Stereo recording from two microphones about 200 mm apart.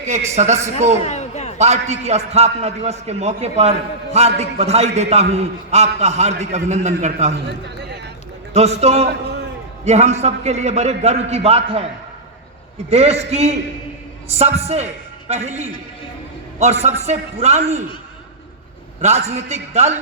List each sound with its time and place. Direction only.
0.0 s a man's voice: 35° right (ahead or behind)
1.0 s a sound: 35° left (ahead or behind)
1.5 s a man's voice: 35° right (ahead or behind)
8.5 s a man's voice: 30° right (ahead or behind)
12.9 s a man's voice: 30° right (ahead or behind)
19.0 s a man's voice: 35° right (ahead or behind)